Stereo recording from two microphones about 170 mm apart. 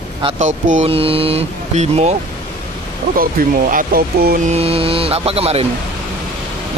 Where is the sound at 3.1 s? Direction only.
60° right (ahead or behind).